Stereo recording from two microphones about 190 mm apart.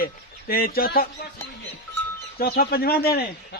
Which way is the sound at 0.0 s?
50° left (ahead or behind).